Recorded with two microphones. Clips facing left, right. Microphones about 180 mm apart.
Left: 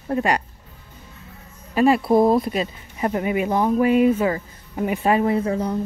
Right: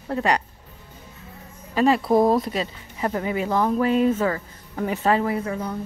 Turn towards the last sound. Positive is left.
turn(degrees=30)  # may be behind; listen again after turning